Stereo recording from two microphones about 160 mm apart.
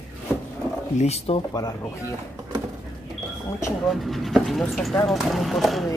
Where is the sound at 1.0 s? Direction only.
40° left (ahead or behind).